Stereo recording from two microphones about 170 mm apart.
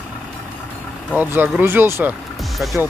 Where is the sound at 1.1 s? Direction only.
10° right (ahead or behind).